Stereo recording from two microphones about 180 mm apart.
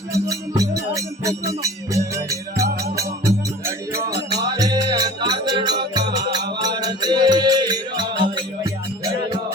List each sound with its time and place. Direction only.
0.1 s music: 20° right (ahead or behind)